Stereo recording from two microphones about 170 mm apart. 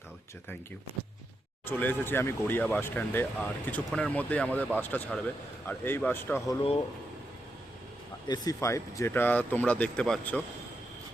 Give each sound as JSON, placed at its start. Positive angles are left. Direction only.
{"t": 1.6, "sound": "speech", "side_deg": 10}
{"t": 6.5, "sound": "speech", "side_deg": 30}
{"t": 8.3, "sound": "speech", "side_deg": 20}